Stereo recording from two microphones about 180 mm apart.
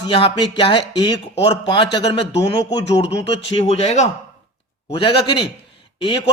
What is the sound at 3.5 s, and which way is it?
Speech, 35° left (ahead or behind).